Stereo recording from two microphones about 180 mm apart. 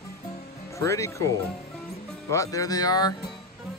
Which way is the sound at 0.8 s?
15° left (ahead or behind).